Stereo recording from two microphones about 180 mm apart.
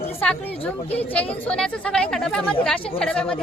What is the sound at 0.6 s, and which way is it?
Speech, 35° left (ahead or behind).